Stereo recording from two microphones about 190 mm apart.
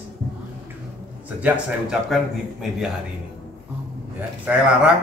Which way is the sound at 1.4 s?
5° right (ahead or behind).